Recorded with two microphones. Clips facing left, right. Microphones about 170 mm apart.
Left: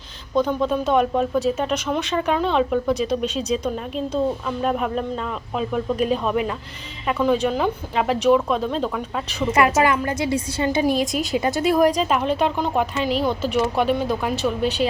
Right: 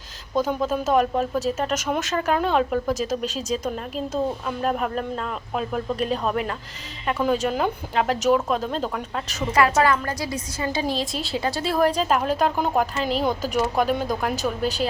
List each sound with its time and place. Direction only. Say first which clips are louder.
0.3 s speech: left 3 dB; 5° right (ahead or behind)
3.2 s speech: left 3 dB; 40° right (ahead or behind)
3.9 s speech: left 3 dB; 5° right (ahead or behind)
6.1 s speech: left 3 dB; 5° left (ahead or behind)
9.5 s a woman's voice: left 1 dB; 20° left (ahead or behind)
12.0 s speech: left 1 dB; centre (ahead or behind)
13.4 s speech: left 2 dB; 40° right (ahead or behind)
14.2 s speech: left 2 dB; 5° left (ahead or behind)
14.6 s speech: left 3 dB; 40° right (ahead or behind)